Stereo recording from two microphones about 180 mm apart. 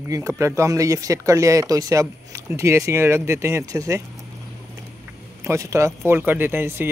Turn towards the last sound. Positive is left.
turn(degrees=-15)  # may be behind; listen again after turning